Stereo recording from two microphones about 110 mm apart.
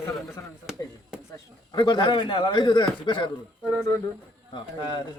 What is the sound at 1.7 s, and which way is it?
A man's voice, 45° left (ahead or behind).